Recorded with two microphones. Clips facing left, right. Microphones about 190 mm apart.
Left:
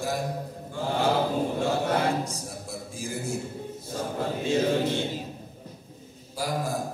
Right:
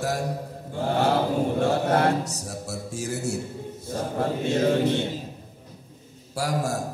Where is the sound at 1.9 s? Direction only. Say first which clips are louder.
Right 4 dB; 70° right (ahead or behind).